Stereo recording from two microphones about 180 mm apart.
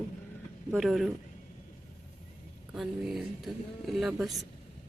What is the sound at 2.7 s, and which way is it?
Speech, centre (ahead or behind).